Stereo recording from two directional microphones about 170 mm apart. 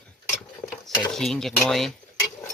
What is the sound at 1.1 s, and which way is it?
Speech, 5° left (ahead or behind).